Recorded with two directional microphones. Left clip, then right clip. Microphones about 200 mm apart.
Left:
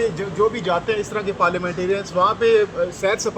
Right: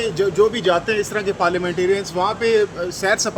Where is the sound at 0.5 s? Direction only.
60° right (ahead or behind).